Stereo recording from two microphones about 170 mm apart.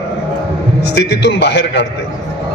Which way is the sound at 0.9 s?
90° left.